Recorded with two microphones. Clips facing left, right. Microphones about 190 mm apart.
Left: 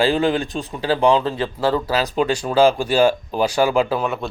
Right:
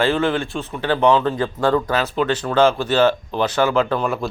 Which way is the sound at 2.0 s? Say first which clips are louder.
Left 1 dB; 15° left (ahead or behind).